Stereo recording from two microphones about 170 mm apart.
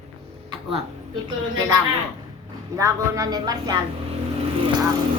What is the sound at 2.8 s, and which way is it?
Speech, 20° right (ahead or behind).